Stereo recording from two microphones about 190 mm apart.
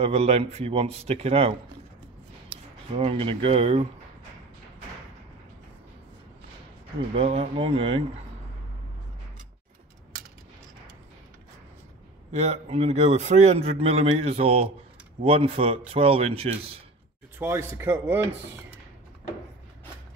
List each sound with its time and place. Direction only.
0.0 s a man's voice: 35° right (ahead or behind)
3.0 s a man's voice: 30° right (ahead or behind)
7.2 s a man's voice: 35° right (ahead or behind)
12.3 s a man's voice: 35° right (ahead or behind)
17.4 s speech: 15° right (ahead or behind)